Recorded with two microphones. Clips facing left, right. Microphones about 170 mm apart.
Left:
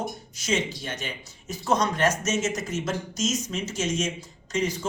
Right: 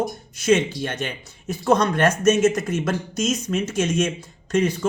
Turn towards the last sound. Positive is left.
turn(degrees=-60)  # may be behind; listen again after turning